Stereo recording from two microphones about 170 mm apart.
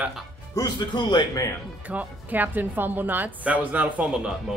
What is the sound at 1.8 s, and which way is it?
A woman's voice, 10° right (ahead or behind).